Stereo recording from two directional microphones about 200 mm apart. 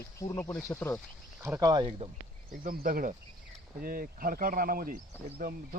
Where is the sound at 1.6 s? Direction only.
20° right (ahead or behind).